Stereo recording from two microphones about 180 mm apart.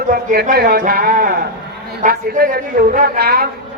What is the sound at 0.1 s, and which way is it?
A man's voice, 50° right (ahead or behind).